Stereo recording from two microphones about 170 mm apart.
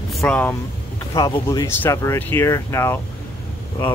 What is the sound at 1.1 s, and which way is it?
Speech, 25° left (ahead or behind).